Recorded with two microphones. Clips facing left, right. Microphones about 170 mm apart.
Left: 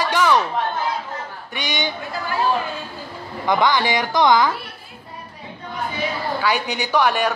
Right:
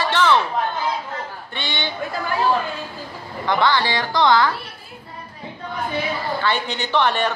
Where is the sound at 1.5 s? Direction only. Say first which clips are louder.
Left 4 dB; 15° left (ahead or behind).